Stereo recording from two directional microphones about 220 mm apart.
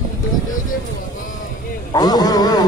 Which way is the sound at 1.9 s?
15° left (ahead or behind).